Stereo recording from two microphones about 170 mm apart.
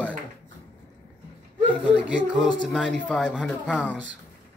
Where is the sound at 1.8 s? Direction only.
5° right (ahead or behind).